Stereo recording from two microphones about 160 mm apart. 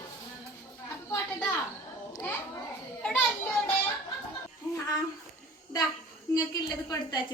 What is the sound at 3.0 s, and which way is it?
Children playing, 10° left (ahead or behind).